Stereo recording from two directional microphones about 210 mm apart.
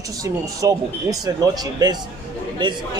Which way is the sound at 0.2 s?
15° right (ahead or behind).